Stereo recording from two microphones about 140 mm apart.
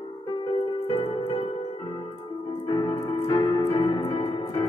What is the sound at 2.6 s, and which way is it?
Music, 30° left (ahead or behind).